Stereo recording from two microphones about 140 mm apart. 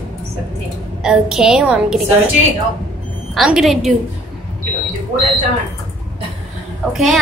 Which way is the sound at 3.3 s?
5° right (ahead or behind).